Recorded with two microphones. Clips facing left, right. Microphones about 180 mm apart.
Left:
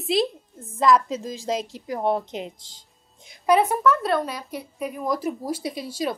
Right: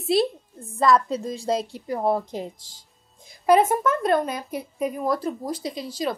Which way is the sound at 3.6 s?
45° right (ahead or behind).